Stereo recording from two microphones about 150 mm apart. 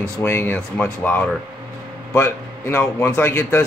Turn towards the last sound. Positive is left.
turn(degrees=15)  # may be behind; listen again after turning